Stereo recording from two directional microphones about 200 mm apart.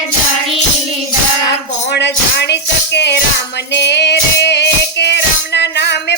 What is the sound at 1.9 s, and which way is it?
Music, 55° left (ahead or behind).